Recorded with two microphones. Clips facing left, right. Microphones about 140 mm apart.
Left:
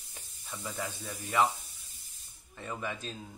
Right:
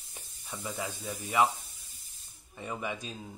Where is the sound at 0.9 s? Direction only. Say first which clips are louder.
Right 1 dB; 10° right (ahead or behind).